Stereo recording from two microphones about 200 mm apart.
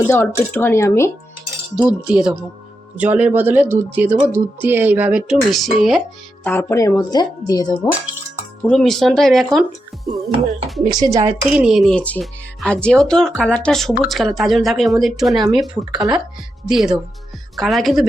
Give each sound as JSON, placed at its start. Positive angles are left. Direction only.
{"t": 0.1, "sound": "a woman's voice", "side_deg": 10}
{"t": 1.7, "sound": "speech", "side_deg": -5}
{"t": 6.4, "sound": "a woman's voice", "side_deg": 10}
{"t": 8.6, "sound": "speech", "side_deg": 5}
{"t": 10.9, "sound": "speech", "side_deg": -15}
{"t": 11.4, "sound": "speech", "side_deg": -5}
{"t": 16.0, "sound": "speech", "side_deg": -20}
{"t": 16.6, "sound": "speech", "side_deg": -5}